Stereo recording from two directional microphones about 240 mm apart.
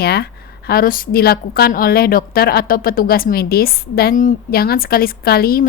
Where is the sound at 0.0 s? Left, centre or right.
Left.